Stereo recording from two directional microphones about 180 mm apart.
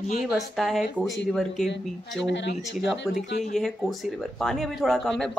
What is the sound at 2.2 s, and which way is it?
Speech, 75° left (ahead or behind).